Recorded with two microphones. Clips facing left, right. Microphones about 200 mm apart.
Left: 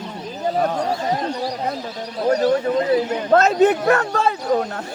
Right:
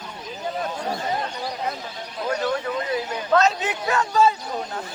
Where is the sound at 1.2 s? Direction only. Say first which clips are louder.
Left 5 dB; 35° left (ahead or behind).